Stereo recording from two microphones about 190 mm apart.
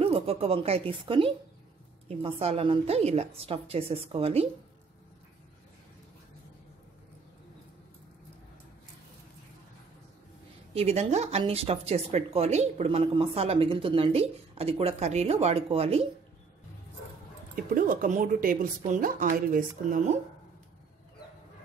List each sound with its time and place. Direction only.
0.0 s speech: 30° right (ahead or behind)
10.7 s speech: 35° right (ahead or behind)
17.6 s speech: 45° right (ahead or behind)